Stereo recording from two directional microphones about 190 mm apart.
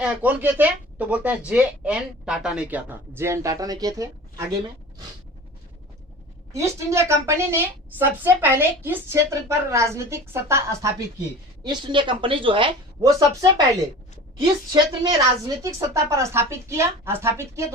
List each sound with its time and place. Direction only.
0.0 s speech: 5° right (ahead or behind)
6.5 s speech: 15° right (ahead or behind)
14.7 s speech: 20° right (ahead or behind)